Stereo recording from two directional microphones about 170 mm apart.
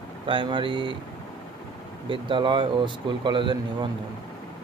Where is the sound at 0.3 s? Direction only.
30° right (ahead or behind).